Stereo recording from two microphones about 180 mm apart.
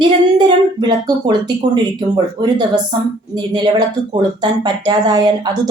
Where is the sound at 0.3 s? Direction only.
25° right (ahead or behind).